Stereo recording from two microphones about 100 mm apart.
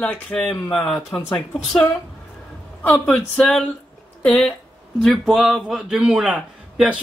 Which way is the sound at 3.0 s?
10° left (ahead or behind).